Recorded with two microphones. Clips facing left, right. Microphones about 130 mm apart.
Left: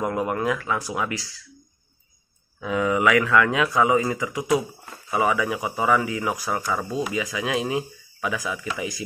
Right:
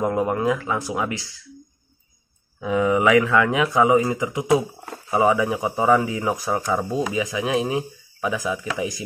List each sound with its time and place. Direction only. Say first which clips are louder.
0.0 s speech: right 3 dB; 20° right (ahead or behind)
2.6 s speech: right 3 dB; 20° right (ahead or behind)